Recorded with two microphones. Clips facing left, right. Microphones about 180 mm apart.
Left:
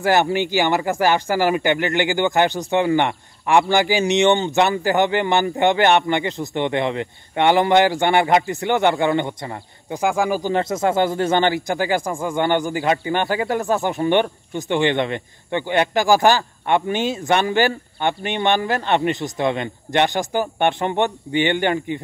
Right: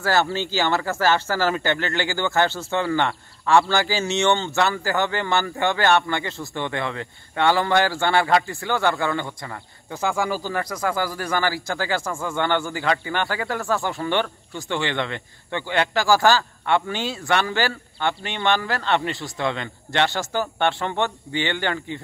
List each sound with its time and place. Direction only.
0.0 s speech: 15° left (ahead or behind)